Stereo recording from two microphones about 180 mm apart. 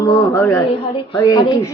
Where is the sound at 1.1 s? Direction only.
20° left (ahead or behind).